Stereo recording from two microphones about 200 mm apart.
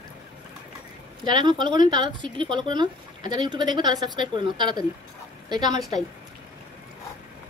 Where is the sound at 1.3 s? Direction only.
20° right (ahead or behind).